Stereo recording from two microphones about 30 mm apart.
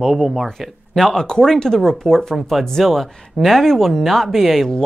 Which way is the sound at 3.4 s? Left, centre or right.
Centre.